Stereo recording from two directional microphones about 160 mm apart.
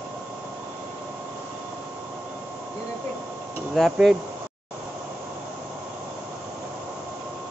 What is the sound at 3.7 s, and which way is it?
Speech, centre (ahead or behind).